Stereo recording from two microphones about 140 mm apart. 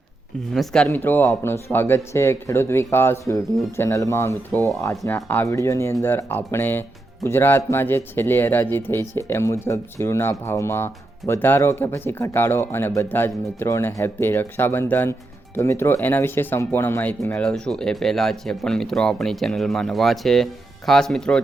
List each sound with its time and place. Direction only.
0.5 s speech: 5° left (ahead or behind)
0.9 s speech: 15° left (ahead or behind)